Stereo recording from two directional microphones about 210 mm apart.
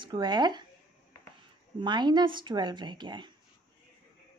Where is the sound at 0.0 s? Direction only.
20° right (ahead or behind).